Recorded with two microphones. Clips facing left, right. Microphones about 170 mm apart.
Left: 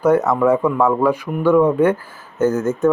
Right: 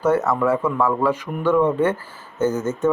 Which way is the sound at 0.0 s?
15° left (ahead or behind).